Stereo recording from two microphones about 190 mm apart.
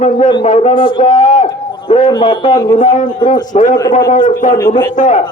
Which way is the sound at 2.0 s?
25° left (ahead or behind).